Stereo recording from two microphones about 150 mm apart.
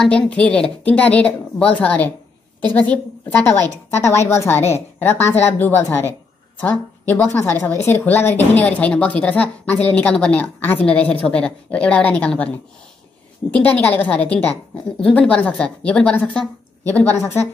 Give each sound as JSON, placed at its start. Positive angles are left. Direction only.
{"t": 0.0, "sound": "a woman's voice", "side_deg": 10}